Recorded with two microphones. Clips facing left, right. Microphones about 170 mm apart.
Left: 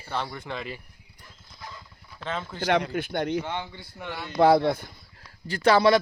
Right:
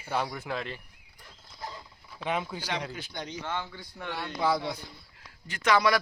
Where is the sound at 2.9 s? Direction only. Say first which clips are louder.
Left 12 dB; 55° left (ahead or behind).